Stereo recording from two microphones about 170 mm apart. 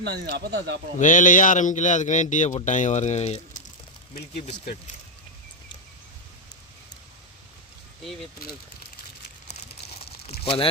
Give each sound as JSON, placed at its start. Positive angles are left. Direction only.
{"t": 0.0, "sound": "speech", "side_deg": -80}
{"t": 0.9, "sound": "a man's voice", "side_deg": 50}
{"t": 10.0, "sound": "crumpling", "side_deg": 35}
{"t": 10.4, "sound": "speech", "side_deg": 35}